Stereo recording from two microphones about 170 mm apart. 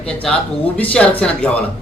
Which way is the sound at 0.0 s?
5° left (ahead or behind).